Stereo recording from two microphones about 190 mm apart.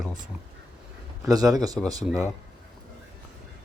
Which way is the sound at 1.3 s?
20° right (ahead or behind).